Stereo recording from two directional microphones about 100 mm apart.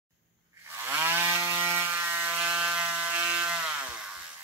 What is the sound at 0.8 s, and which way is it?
Ratchet, 20° right (ahead or behind).